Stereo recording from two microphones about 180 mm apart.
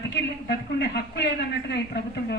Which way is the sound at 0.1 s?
70° left (ahead or behind).